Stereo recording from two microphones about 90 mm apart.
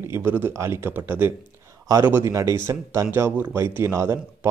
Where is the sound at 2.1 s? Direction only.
35° right (ahead or behind).